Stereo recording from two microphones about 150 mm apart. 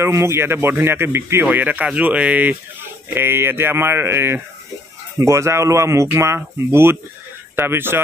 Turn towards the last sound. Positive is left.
turn(degrees=-15)  # may be behind; listen again after turning